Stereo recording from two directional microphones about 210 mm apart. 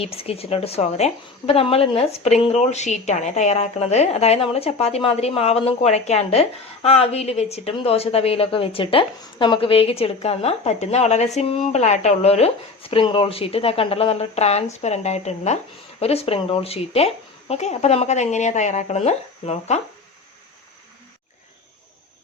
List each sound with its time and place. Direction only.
0.0 s a woman's voice: 25° left (ahead or behind)